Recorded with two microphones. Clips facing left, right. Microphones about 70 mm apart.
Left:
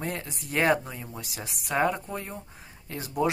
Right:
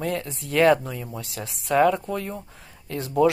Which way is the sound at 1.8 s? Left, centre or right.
Right.